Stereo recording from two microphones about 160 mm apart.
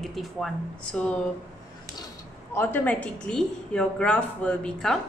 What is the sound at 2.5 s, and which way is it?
A woman's voice, 10° left (ahead or behind).